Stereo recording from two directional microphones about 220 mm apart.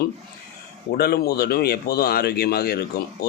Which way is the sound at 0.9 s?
45° left (ahead or behind).